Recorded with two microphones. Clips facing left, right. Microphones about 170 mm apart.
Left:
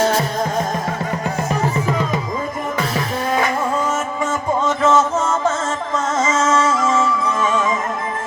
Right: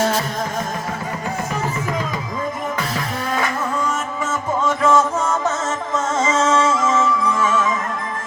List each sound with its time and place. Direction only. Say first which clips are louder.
4.6 s music: even; 10° right (ahead or behind)
6.1 s music: even; 30° right (ahead or behind)
6.7 s music: even; 15° left (ahead or behind)